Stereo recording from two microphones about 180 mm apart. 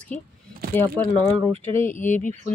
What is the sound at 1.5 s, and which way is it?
Speech, 30° right (ahead or behind).